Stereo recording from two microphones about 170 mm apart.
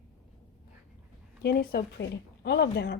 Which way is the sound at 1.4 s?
70° left (ahead or behind).